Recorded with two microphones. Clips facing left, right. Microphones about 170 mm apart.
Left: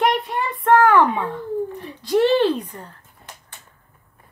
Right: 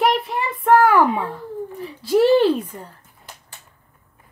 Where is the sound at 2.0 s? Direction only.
5° right (ahead or behind).